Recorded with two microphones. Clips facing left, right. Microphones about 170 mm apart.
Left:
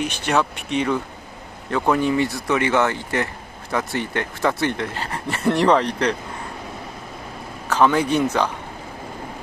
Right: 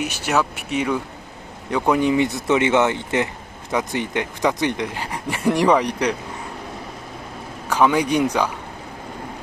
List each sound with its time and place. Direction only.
0.0 s speech: 10° right (ahead or behind)
7.7 s speech: 10° right (ahead or behind)